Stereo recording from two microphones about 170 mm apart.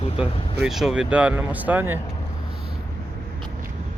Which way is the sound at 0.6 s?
Centre (ahead or behind).